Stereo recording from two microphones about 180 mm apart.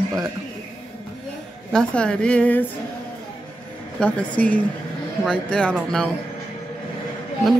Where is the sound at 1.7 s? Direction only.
5° left (ahead or behind).